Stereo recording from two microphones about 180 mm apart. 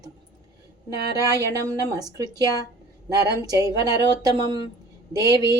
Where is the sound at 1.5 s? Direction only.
20° right (ahead or behind).